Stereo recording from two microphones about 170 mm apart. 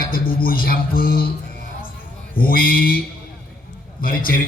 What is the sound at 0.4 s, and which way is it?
Speech, 60° left (ahead or behind).